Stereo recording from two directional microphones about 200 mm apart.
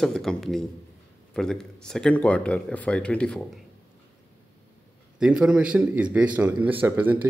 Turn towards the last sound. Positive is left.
turn(degrees=-10)  # may be behind; listen again after turning